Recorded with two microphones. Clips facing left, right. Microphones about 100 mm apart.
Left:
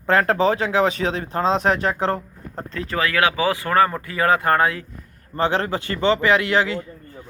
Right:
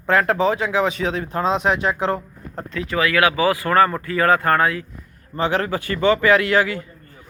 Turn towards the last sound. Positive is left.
turn(degrees=25)  # may be behind; listen again after turning